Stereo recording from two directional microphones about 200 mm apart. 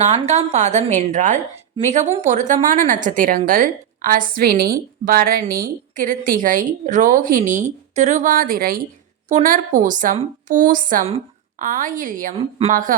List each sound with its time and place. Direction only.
0.0 s a woman's voice: 35° right (ahead or behind)